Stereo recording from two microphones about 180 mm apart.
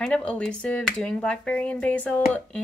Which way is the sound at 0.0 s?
5° left (ahead or behind).